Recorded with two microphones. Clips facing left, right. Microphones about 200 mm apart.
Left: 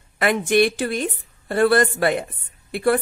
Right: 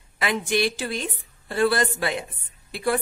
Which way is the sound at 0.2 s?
55° left (ahead or behind).